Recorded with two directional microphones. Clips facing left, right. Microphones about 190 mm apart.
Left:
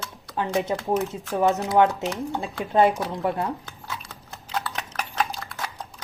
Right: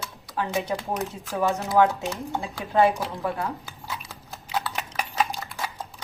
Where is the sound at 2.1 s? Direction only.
Centre (ahead or behind).